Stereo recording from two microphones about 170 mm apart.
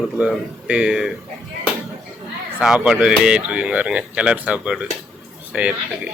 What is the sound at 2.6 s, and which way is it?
Speech, 5° right (ahead or behind).